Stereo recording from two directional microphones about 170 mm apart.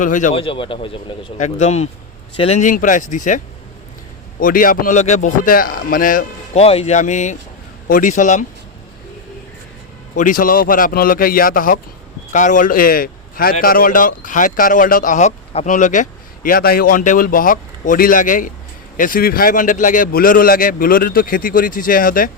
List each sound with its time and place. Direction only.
0.0 s a man's voice: 50° left (ahead or behind)
0.3 s speech: 30° left (ahead or behind)
1.4 s a man's voice: 40° left (ahead or behind)
6.6 s a man's voice: 35° left (ahead or behind)
10.2 s a man's voice: 50° left (ahead or behind)